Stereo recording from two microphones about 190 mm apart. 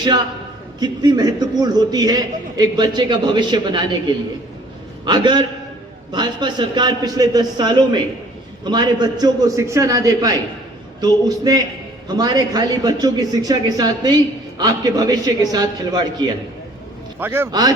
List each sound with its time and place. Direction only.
0.8 s a man's voice: 20° right (ahead or behind)
5.0 s a man's voice: 25° right (ahead or behind)
17.2 s a man's voice: 10° right (ahead or behind)